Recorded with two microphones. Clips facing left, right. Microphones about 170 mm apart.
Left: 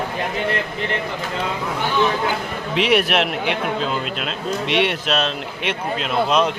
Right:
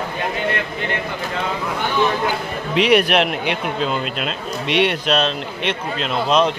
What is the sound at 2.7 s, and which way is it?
Speech, centre (ahead or behind).